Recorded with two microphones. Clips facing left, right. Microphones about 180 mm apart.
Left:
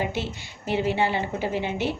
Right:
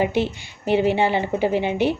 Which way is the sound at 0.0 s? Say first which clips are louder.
Right 7 dB; 15° right (ahead or behind).